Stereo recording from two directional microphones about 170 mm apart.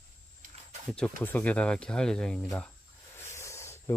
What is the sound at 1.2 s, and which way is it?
Speech, 10° left (ahead or behind).